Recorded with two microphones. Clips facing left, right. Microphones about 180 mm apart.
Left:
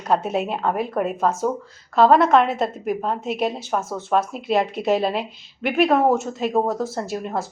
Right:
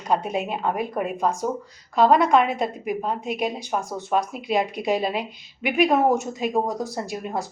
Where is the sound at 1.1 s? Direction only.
15° right (ahead or behind).